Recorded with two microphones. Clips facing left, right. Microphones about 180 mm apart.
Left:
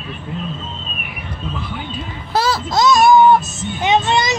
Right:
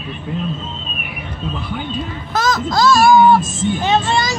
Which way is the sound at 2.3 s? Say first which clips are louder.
Even; 30° left (ahead or behind).